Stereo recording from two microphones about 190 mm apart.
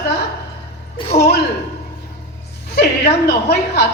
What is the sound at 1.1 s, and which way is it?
Speech, 35° left (ahead or behind).